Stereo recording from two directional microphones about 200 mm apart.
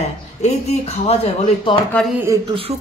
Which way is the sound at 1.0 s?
30° left (ahead or behind).